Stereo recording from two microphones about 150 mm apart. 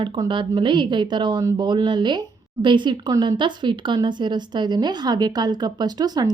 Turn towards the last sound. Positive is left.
turn(degrees=-25)  # may be behind; listen again after turning